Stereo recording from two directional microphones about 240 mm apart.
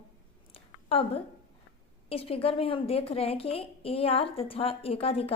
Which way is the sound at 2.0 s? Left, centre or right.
Left.